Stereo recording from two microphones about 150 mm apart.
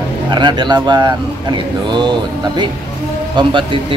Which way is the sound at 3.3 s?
35° right (ahead or behind).